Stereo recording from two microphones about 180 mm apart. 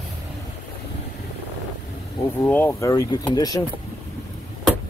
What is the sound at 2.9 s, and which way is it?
Speech, 25° left (ahead or behind).